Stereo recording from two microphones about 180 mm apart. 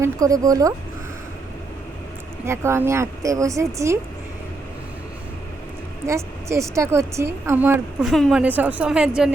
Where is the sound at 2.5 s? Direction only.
15° right (ahead or behind).